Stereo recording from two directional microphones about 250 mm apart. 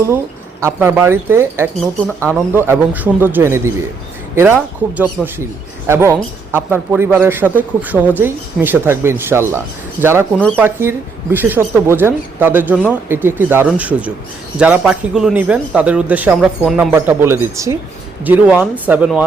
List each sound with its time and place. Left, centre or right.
0.6 s speech: centre
10.3 s speech: centre
10.6 s speech: centre